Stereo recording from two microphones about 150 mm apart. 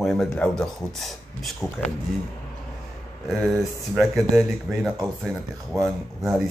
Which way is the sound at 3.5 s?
Centre (ahead or behind).